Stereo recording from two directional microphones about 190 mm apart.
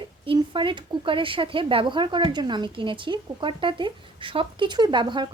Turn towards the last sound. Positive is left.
turn(degrees=-25)  # may be behind; listen again after turning